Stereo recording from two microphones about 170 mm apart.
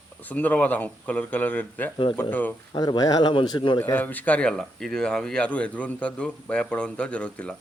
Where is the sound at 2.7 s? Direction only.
25° left (ahead or behind).